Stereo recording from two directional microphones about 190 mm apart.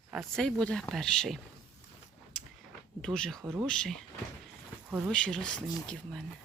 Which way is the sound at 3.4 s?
10° right (ahead or behind).